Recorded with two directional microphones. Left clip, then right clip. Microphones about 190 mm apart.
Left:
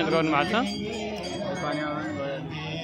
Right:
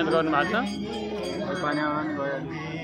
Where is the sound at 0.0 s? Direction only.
15° left (ahead or behind).